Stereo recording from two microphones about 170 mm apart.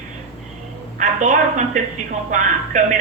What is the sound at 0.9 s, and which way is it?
A woman's voice, 50° right (ahead or behind).